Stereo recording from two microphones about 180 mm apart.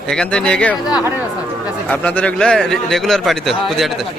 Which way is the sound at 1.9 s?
5° left (ahead or behind).